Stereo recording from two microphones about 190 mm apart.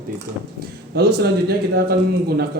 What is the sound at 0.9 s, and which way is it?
Speech, 60° right (ahead or behind).